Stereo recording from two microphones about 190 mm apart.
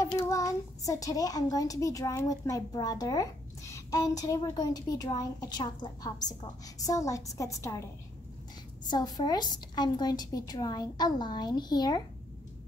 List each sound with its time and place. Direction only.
0.0 s a child's voice: 15° left (ahead or behind)
8.8 s a woman's voice: 20° left (ahead or behind)